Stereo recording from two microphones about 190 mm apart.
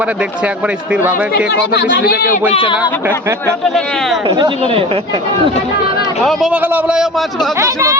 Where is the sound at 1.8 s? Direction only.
55° left (ahead or behind).